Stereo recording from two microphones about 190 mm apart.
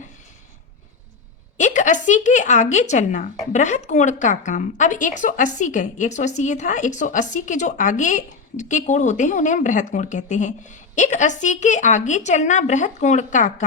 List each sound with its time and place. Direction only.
1.5 s a woman's voice: 40° left (ahead or behind)